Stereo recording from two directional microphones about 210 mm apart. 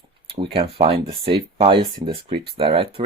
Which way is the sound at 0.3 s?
25° right (ahead or behind).